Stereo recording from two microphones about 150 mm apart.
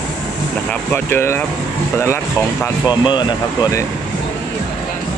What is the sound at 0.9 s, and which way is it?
Speech, 15° left (ahead or behind).